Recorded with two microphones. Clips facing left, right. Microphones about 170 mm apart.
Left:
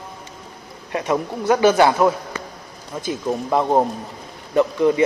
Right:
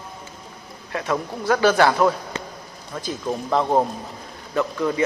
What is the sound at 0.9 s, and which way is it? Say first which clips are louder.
A man's voice: left 3 dB; 20° left (ahead or behind).